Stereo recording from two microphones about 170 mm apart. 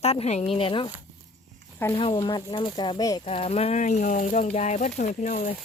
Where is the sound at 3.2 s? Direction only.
35° left (ahead or behind).